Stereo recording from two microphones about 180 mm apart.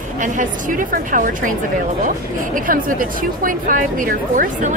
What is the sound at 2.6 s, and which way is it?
Speech, 50° right (ahead or behind).